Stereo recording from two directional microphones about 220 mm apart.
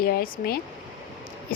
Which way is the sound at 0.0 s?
40° left (ahead or behind).